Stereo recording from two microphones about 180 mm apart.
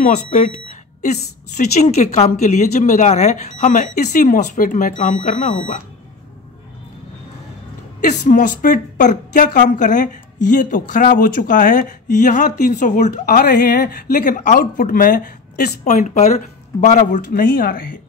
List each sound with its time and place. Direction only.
0.0 s a woman's voice: 45° left (ahead or behind)
8.0 s a woman's voice: 45° left (ahead or behind)